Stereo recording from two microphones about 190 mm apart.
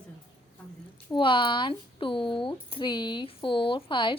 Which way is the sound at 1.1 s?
25° left (ahead or behind).